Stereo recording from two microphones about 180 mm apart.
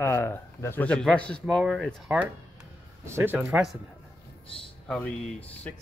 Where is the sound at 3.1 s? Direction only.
15° right (ahead or behind).